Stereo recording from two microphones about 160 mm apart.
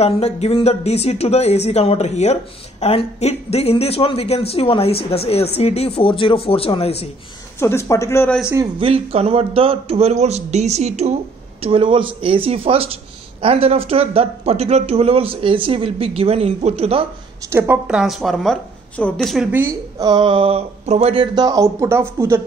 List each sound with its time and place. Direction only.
0.0 s speech: 40° left (ahead or behind)
7.5 s speech: 15° left (ahead or behind)
8.7 s speech: 35° right (ahead or behind)
11.6 s speech: 35° right (ahead or behind)
17.5 s a woman's voice: 15° right (ahead or behind)
19.5 s a woman's voice: 15° right (ahead or behind)
20.1 s speech: 30° right (ahead or behind)